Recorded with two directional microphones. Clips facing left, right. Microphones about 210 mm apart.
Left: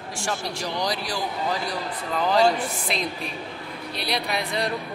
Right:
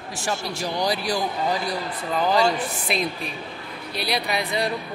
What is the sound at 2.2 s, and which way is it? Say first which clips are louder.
A woman's voice: left 1 dB; 5° right (ahead or behind).